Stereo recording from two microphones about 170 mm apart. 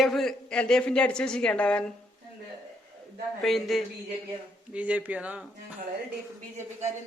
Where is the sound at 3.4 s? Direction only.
Centre (ahead or behind).